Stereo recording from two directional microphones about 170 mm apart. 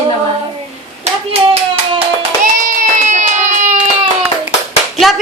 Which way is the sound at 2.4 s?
50° right (ahead or behind).